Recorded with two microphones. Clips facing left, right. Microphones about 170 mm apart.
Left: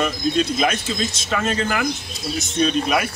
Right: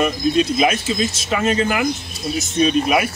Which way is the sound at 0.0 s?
10° right (ahead or behind).